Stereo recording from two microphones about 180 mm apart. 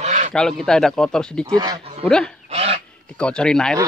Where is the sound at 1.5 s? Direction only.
20° right (ahead or behind).